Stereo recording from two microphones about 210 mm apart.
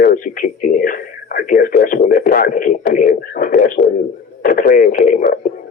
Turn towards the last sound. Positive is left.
turn(degrees=40)  # may be behind; listen again after turning